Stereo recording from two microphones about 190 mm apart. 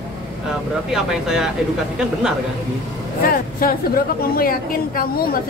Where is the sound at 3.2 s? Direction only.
50° left (ahead or behind).